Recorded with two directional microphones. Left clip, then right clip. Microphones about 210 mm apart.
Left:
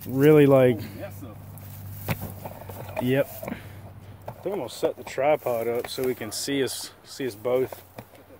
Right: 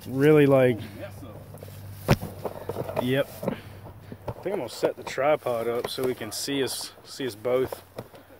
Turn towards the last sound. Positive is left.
turn(degrees=-20)  # may be behind; listen again after turning